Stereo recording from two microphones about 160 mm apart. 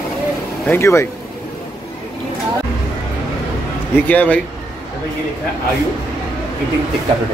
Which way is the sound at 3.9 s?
10° left (ahead or behind).